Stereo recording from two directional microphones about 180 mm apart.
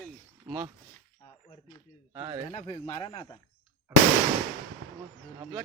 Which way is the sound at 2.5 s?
30° left (ahead or behind).